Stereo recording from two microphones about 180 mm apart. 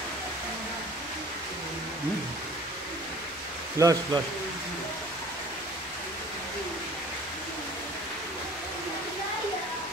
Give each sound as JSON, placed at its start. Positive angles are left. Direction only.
{"t": 3.7, "sound": "a man's voice", "side_deg": -20}